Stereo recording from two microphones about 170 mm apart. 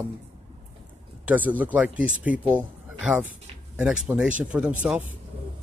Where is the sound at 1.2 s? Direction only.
10° right (ahead or behind).